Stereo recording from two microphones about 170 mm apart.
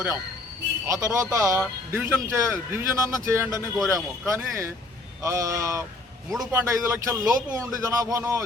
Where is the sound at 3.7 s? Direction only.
Centre (ahead or behind).